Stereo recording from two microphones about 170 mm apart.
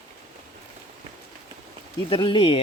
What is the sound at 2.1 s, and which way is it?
Speech, 30° left (ahead or behind).